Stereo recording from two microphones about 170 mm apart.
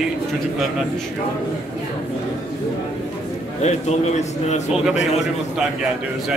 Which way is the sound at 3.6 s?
40° left (ahead or behind).